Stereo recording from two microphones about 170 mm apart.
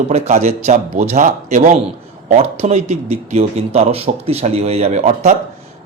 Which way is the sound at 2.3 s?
40° right (ahead or behind).